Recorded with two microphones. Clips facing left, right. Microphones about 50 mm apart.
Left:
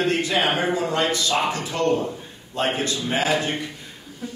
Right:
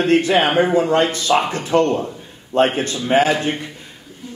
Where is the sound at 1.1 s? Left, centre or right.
Right.